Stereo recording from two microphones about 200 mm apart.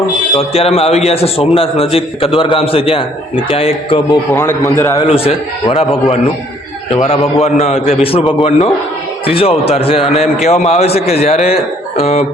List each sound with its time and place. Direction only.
0.3 s a man's voice: 30° left (ahead or behind)
4.3 s a man's voice: 15° left (ahead or behind)
5.0 s a man's voice: 30° left (ahead or behind)